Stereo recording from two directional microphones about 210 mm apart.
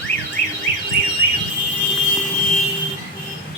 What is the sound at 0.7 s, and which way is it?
Car alarm, 50° right (ahead or behind).